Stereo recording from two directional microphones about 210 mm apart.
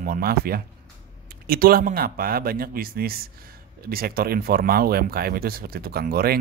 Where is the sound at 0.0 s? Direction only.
45° right (ahead or behind).